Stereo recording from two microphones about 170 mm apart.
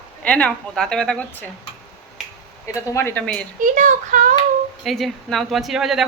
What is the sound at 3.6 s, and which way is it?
Speech, 45° right (ahead or behind).